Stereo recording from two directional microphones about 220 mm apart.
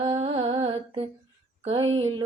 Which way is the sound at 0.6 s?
25° right (ahead or behind).